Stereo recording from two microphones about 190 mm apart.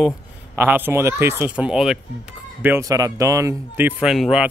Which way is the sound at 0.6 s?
10° right (ahead or behind).